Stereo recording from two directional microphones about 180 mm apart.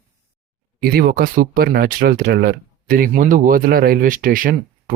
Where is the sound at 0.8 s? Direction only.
55° right (ahead or behind).